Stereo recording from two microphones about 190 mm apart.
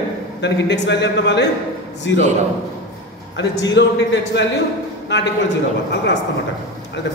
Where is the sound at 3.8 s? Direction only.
65° left (ahead or behind).